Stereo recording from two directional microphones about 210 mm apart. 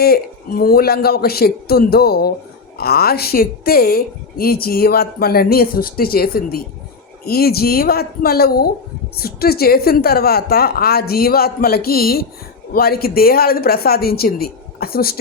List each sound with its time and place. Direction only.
0.0 s a woman's voice: 45° left (ahead or behind)